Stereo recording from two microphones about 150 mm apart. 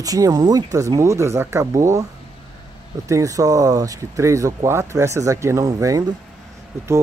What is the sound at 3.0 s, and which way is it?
Speech, 20° right (ahead or behind).